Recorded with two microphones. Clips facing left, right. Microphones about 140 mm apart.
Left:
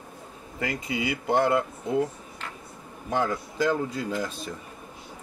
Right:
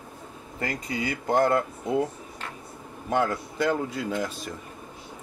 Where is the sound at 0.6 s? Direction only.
5° left (ahead or behind).